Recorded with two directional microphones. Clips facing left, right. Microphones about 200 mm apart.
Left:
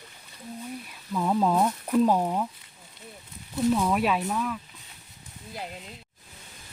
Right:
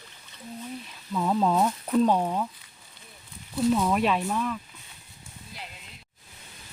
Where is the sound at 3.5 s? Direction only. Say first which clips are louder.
Even; centre (ahead or behind).